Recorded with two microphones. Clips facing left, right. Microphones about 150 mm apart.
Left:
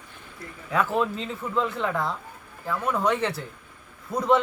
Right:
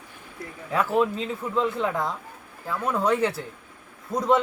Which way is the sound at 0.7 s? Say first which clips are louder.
Right 2 dB; 10° right (ahead or behind).